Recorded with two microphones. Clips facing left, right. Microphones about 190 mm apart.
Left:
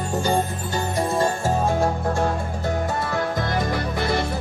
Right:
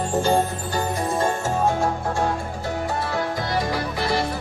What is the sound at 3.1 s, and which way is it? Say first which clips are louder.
Music: left 1 dB; 50° left (ahead or behind).